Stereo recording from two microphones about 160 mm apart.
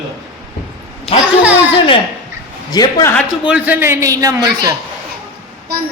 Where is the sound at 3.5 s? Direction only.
10° right (ahead or behind).